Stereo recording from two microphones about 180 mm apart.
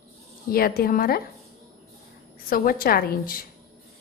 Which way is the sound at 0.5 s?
55° left (ahead or behind).